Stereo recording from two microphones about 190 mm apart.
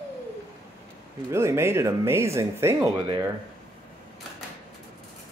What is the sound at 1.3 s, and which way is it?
Speech, 15° right (ahead or behind).